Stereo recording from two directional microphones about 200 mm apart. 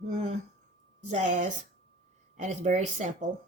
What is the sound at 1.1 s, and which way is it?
Speech, 35° right (ahead or behind).